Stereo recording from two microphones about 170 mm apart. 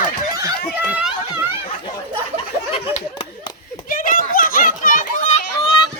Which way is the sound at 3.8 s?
55° left (ahead or behind).